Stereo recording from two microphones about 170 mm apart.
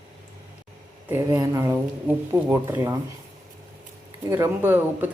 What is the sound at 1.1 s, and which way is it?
Speech, 15° right (ahead or behind).